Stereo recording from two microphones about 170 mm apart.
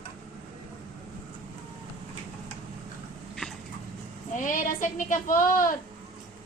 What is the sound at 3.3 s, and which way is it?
Dog, 5° left (ahead or behind).